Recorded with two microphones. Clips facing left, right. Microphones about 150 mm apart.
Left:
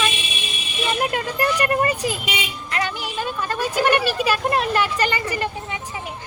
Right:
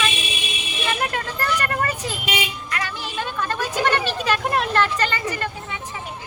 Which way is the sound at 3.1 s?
10° left (ahead or behind).